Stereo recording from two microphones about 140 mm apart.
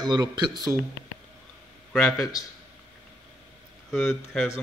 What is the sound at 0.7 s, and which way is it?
Speech, centre (ahead or behind).